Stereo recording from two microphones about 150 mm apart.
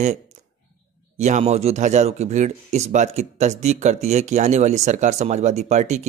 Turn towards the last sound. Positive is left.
turn(degrees=-50)  # may be behind; listen again after turning